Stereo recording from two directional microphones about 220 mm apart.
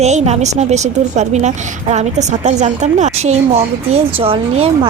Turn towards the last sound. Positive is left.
turn(degrees=-25)  # may be behind; listen again after turning